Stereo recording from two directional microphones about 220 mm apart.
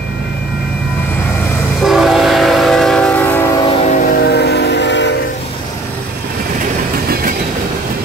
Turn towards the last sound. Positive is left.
turn(degrees=-40)  # may be behind; listen again after turning